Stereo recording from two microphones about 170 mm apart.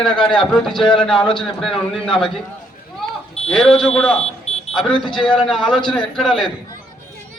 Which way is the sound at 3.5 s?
5° left (ahead or behind).